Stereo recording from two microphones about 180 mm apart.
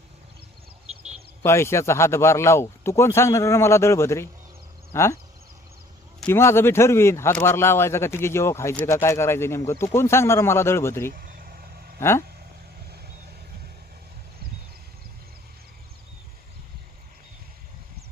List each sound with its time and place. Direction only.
1.5 s speech: 15° left (ahead or behind)
11.1 s vehicle: 50° right (ahead or behind)
11.9 s speech: 15° left (ahead or behind)